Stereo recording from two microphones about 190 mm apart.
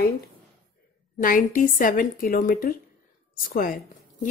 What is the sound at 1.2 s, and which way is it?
A woman's voice, 45° left (ahead or behind).